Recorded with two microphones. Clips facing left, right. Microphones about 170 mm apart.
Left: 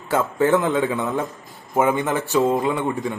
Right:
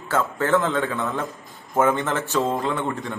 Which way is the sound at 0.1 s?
15° left (ahead or behind).